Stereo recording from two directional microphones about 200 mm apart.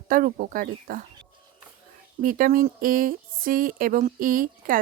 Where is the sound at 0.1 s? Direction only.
45° right (ahead or behind).